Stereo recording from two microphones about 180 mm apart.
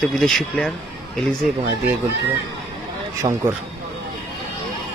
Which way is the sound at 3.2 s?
20° right (ahead or behind).